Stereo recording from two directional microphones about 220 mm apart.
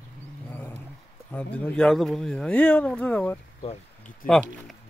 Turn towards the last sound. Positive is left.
turn(degrees=40)  # may be behind; listen again after turning